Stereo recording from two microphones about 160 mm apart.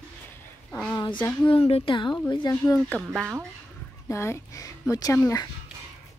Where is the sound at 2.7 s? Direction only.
5° left (ahead or behind).